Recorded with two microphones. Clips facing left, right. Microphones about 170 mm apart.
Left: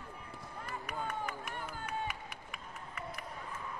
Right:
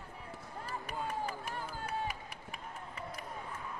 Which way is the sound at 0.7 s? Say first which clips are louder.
Right 1 dB; 30° right (ahead or behind).